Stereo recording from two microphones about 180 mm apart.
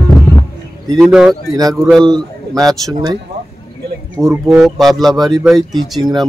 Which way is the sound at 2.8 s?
20° right (ahead or behind).